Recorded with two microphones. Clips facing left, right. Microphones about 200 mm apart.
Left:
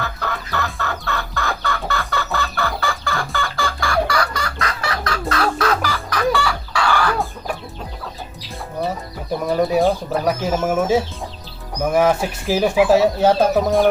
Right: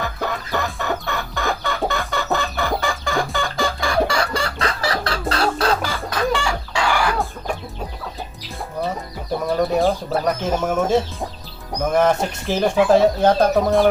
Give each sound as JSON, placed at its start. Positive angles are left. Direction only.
{"t": 0.5, "sound": "chicken", "side_deg": -15}
{"t": 9.5, "sound": "speech", "side_deg": 0}